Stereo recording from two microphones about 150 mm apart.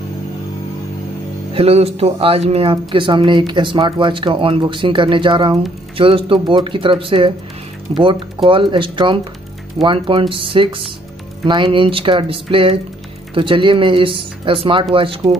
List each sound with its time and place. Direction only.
1.5 s speech: 40° right (ahead or behind)